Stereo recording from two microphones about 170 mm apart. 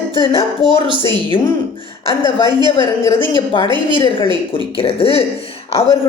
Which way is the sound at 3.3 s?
30° left (ahead or behind).